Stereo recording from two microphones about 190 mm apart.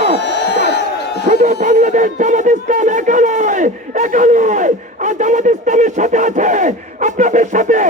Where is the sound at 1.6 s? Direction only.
40° right (ahead or behind).